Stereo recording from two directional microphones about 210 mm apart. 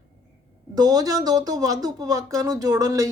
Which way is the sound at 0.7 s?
20° right (ahead or behind).